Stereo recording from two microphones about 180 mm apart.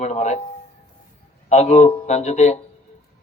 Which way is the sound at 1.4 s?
40° left (ahead or behind).